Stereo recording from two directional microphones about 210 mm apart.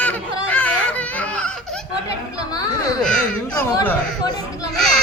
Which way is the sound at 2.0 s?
20° left (ahead or behind).